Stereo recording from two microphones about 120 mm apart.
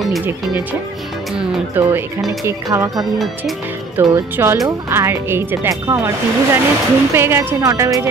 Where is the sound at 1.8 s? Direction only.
15° right (ahead or behind).